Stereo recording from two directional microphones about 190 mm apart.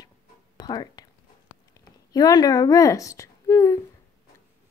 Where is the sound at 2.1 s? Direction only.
20° left (ahead or behind).